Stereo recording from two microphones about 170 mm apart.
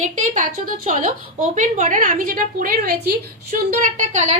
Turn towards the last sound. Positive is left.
turn(degrees=-45)  # may be behind; listen again after turning